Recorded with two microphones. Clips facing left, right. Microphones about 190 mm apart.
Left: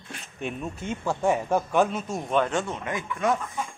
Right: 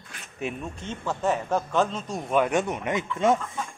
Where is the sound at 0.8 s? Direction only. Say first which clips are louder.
Left 2 dB; 10° left (ahead or behind).